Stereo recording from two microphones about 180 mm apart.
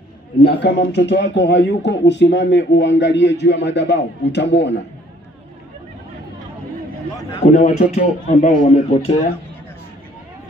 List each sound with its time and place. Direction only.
0.5 s a man's voice: 70° left (ahead or behind)
7.6 s speech: 45° left (ahead or behind)